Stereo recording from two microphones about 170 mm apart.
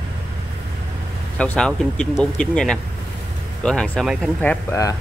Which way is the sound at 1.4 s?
5° left (ahead or behind).